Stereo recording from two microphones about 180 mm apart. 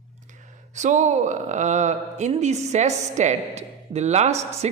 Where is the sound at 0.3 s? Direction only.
45° right (ahead or behind).